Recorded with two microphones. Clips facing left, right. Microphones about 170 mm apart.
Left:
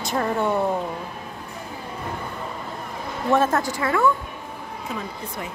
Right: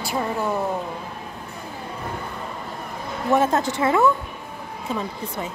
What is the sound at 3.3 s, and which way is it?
Speech, 15° right (ahead or behind).